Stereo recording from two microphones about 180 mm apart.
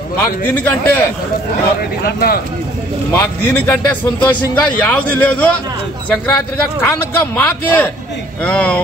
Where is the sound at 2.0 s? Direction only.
55° left (ahead or behind).